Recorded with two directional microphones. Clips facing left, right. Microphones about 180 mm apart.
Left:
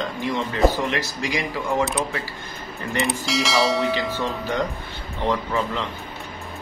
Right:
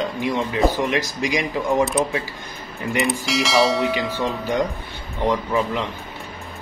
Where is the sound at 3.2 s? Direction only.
Centre (ahead or behind).